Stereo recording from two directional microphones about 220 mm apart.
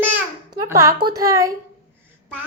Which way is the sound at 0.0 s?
10° right (ahead or behind).